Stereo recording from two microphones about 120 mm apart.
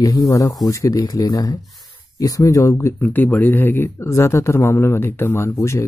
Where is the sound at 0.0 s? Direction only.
30° left (ahead or behind).